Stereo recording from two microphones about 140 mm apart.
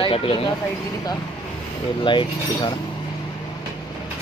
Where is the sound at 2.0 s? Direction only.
35° left (ahead or behind).